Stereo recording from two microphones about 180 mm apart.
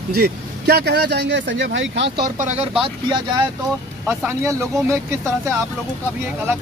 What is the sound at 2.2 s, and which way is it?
Speech, 40° right (ahead or behind).